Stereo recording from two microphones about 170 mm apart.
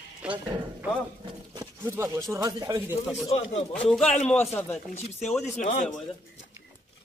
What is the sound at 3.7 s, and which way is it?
Speech, 5° left (ahead or behind).